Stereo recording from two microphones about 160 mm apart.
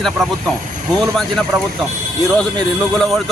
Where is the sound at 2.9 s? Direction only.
Centre (ahead or behind).